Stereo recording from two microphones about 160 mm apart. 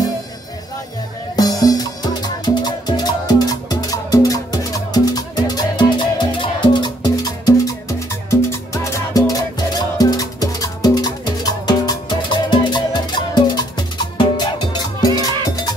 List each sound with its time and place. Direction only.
1.3 s music: 25° left (ahead or behind)